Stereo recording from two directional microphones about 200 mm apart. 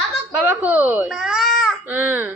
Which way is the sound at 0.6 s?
10° right (ahead or behind).